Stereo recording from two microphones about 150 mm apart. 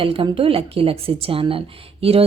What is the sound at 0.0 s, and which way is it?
A woman's voice, 40° right (ahead or behind).